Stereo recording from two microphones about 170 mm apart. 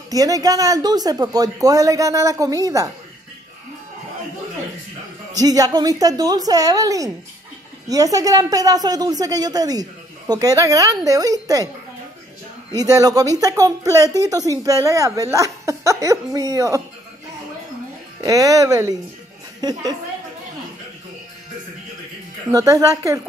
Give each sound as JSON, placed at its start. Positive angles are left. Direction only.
{"t": 0.1, "sound": "a woman's voice", "side_deg": -20}
{"t": 5.4, "sound": "a woman's voice", "side_deg": -20}
{"t": 12.7, "sound": "a woman's voice", "side_deg": -20}
{"t": 18.2, "sound": "a woman's voice", "side_deg": -20}
{"t": 22.5, "sound": "a woman's voice", "side_deg": -20}